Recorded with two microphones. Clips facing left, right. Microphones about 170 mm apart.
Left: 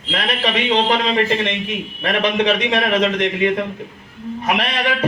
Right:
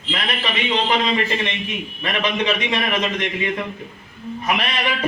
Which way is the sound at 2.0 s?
65° left (ahead or behind).